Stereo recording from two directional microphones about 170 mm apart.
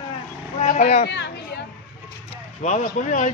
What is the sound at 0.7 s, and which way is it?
Speech, 45° left (ahead or behind).